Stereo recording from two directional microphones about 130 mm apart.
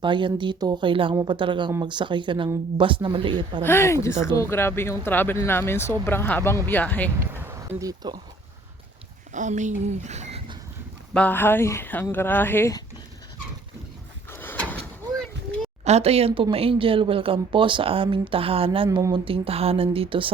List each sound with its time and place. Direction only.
0.0 s speech: 40° right (ahead or behind)
3.6 s speech: 20° left (ahead or behind)
7.2 s speech: 20° right (ahead or behind)
9.3 s speech: 70° right (ahead or behind)
11.1 s speech: 10° left (ahead or behind)
14.3 s a sound: 15° left (ahead or behind)
15.8 s speech: 55° right (ahead or behind)
18.9 s speech: 30° right (ahead or behind)